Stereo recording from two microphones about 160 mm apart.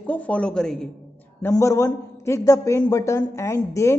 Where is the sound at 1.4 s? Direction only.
20° left (ahead or behind).